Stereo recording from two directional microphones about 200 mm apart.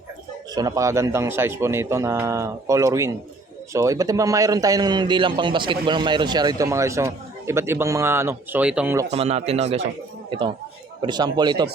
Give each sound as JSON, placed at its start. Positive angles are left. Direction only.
{"t": 0.5, "sound": "a man's voice", "side_deg": -20}
{"t": 9.0, "sound": "a man's voice", "side_deg": -30}
{"t": 11.0, "sound": "speech", "side_deg": -20}